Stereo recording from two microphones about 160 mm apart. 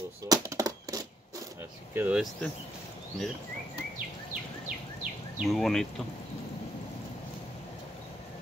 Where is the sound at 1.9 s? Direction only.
10° right (ahead or behind).